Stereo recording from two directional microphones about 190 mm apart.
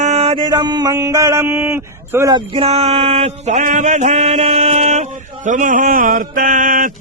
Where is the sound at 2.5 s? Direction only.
30° right (ahead or behind).